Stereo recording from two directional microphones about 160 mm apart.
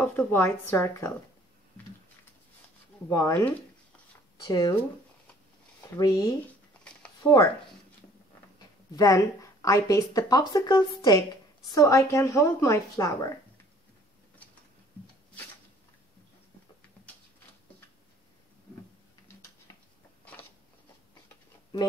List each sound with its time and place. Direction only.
0.0 s a woman's voice: 10° left (ahead or behind)
3.1 s speech: 20° left (ahead or behind)
5.9 s speech: 20° left (ahead or behind)
8.5 s a woman's voice: 20° left (ahead or behind)